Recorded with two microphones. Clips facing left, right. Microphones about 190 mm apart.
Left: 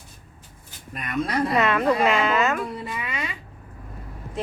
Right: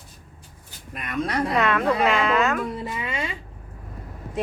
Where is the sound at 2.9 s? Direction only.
25° right (ahead or behind).